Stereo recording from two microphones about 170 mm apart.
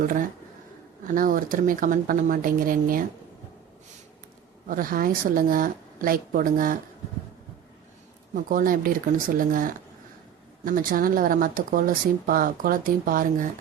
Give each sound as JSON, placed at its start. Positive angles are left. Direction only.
{"t": 1.0, "sound": "speech", "side_deg": -55}
{"t": 4.7, "sound": "speech", "side_deg": -55}
{"t": 8.4, "sound": "speech", "side_deg": -55}